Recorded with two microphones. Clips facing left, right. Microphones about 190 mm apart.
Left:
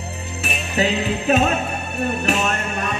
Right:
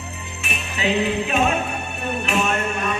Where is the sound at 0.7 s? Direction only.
40° left (ahead or behind).